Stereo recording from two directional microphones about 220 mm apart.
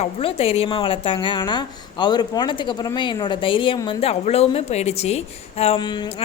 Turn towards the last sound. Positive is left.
turn(degrees=25)  # may be behind; listen again after turning